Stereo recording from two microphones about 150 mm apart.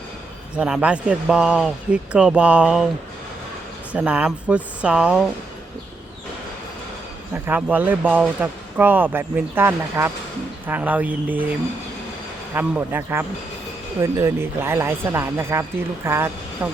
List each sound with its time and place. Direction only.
0.5 s speech: 5° right (ahead or behind)
3.9 s speech: 10° right (ahead or behind)
7.4 s speech: 10° right (ahead or behind)
12.5 s speech: 15° right (ahead or behind)